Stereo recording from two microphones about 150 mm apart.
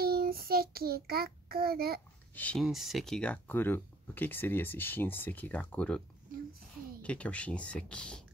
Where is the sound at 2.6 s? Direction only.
Centre (ahead or behind).